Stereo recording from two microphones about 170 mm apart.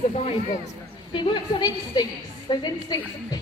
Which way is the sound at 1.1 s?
25° left (ahead or behind).